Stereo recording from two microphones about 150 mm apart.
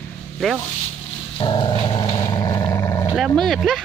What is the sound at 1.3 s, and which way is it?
Dog, 35° left (ahead or behind).